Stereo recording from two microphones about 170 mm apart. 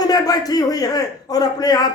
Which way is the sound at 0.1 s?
20° left (ahead or behind).